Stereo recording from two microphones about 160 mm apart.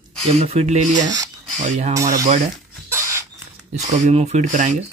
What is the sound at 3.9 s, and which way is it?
Speech, 45° right (ahead or behind).